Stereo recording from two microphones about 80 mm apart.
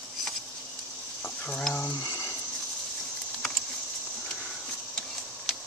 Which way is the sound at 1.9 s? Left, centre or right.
Left.